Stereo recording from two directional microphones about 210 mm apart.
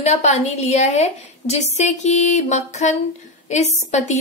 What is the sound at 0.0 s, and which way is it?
A woman's voice, 30° left (ahead or behind).